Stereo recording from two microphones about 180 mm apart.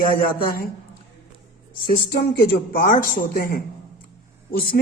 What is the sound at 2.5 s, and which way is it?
A man's voice, 50° left (ahead or behind).